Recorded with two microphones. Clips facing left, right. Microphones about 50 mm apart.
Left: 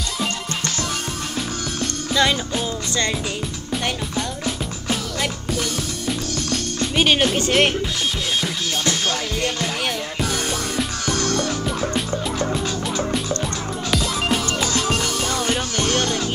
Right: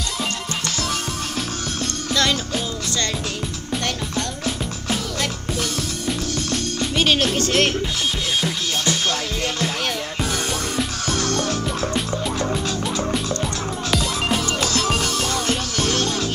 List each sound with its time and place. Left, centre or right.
1.8 s music: centre
4.5 s music: centre
7.0 s music: centre
7.3 s speech: centre
9.0 s music: centre
13.8 s music: centre